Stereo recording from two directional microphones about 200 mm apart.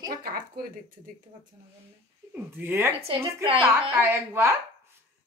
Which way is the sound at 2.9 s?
30° right (ahead or behind).